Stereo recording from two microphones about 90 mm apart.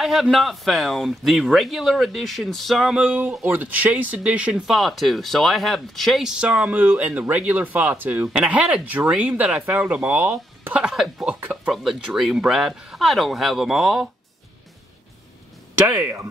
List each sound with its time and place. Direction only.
0.0 s speech: 5° right (ahead or behind)
3.0 s speech: 20° right (ahead or behind)
4.7 s speech: centre (ahead or behind)